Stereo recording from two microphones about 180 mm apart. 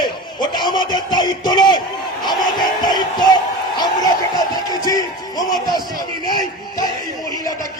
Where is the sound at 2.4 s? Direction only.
25° left (ahead or behind).